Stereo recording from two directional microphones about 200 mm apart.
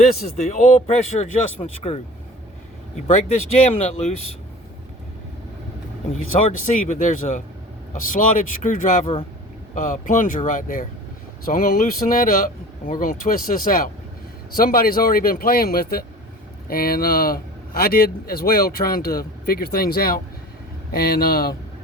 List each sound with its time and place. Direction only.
0.3 s speech: 35° left (ahead or behind)
3.1 s speech: 30° left (ahead or behind)
6.3 s speech: 30° left (ahead or behind); by 21.5 s 50° left (ahead or behind)